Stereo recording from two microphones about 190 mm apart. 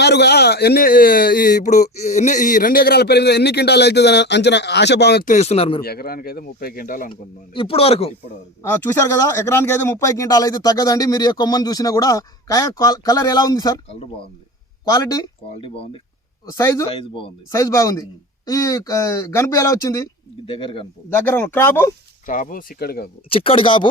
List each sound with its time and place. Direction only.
0.0 s speech: 60° left (ahead or behind)
5.2 s speech: 40° left (ahead or behind)
5.8 s speech: 55° left (ahead or behind)
7.1 s speech: 25° left (ahead or behind)
8.6 s speech: 15° left (ahead or behind)
14.8 s speech: 20° left (ahead or behind)
16.5 s speech: 15° left (ahead or behind)
16.9 s speech: 25° left (ahead or behind)
17.5 s speech: 15° left (ahead or behind)
20.5 s speech: 30° left (ahead or behind)
21.1 s speech: 10° left (ahead or behind)
22.3 s speech: 45° left (ahead or behind)
23.3 s speech: 30° left (ahead or behind)